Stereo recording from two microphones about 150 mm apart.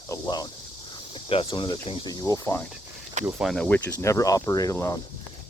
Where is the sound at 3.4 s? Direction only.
5° left (ahead or behind).